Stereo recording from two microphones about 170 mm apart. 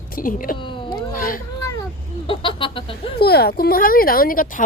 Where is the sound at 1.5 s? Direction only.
20° left (ahead or behind).